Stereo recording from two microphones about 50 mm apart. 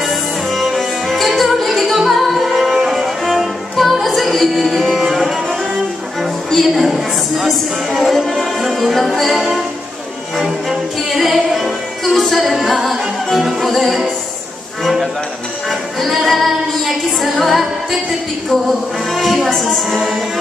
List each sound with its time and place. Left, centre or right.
0.0 s music: centre
6.5 s speech: centre
10.3 s music: centre
16.0 s female singing: centre
18.5 s music: centre